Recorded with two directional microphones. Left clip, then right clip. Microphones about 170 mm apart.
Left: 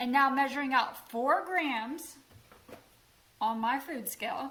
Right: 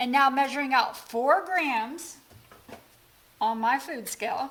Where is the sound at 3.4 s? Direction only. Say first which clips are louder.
Right 5 dB; 50° right (ahead or behind).